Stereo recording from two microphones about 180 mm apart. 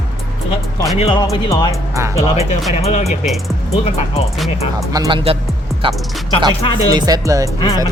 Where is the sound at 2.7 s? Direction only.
35° left (ahead or behind).